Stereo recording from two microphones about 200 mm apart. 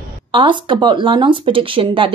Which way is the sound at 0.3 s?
25° right (ahead or behind).